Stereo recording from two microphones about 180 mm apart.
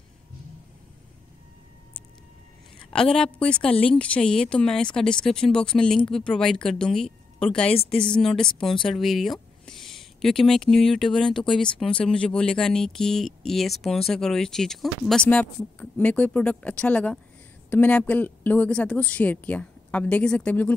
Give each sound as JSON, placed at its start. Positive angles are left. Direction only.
{"t": 2.9, "sound": "speech", "side_deg": 5}
{"t": 7.7, "sound": "speech", "side_deg": 35}
{"t": 8.1, "sound": "a woman's voice", "side_deg": 5}